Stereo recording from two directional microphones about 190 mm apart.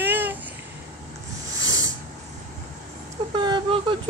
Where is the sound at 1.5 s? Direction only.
20° right (ahead or behind).